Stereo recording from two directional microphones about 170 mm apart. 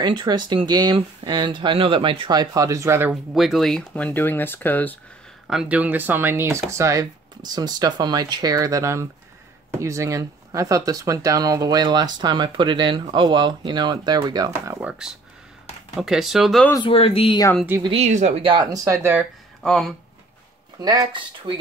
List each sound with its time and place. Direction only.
0.0 s speech: 25° right (ahead or behind)
3.3 s speech: centre (ahead or behind)
5.5 s speech: 5° right (ahead or behind)
16.8 s speech: 35° left (ahead or behind)
17.8 s speech: 40° right (ahead or behind); by 19.2 s 15° right (ahead or behind)
19.6 s speech: 5° left (ahead or behind)
20.8 s speech: 25° right (ahead or behind)